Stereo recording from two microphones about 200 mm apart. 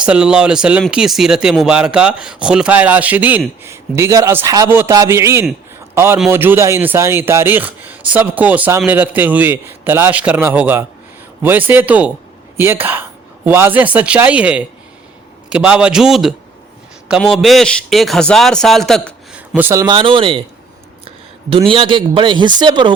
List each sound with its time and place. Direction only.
0.0 s a man's voice: 5° right (ahead or behind); by 20.4 s 25° right (ahead or behind)
21.5 s speech: 25° right (ahead or behind)